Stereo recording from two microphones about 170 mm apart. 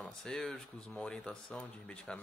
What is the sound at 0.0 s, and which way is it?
Speech, 5° left (ahead or behind).